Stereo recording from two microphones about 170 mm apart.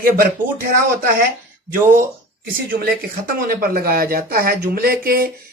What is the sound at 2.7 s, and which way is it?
Speech, 55° right (ahead or behind).